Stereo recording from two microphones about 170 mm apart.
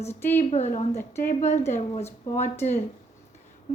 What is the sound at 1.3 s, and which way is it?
Speech, 45° left (ahead or behind).